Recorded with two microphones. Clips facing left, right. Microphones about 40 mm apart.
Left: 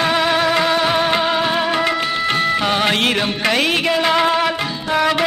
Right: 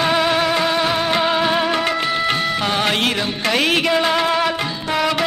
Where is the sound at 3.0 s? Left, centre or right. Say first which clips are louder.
Left 2 dB; left.